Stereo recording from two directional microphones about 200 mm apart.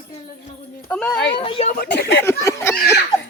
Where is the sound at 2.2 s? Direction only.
15° left (ahead or behind).